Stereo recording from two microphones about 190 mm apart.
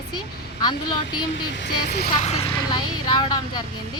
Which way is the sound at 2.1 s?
35° left (ahead or behind).